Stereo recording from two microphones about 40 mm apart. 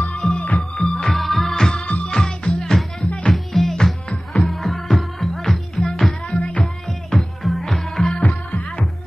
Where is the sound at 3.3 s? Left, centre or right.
Centre.